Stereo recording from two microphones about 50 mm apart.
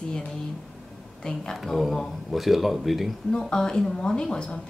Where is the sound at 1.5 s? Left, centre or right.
Centre.